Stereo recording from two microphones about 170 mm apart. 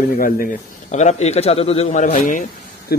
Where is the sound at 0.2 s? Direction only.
55° left (ahead or behind).